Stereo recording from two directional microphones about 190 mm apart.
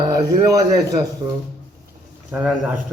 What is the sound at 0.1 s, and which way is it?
Speech, 15° right (ahead or behind).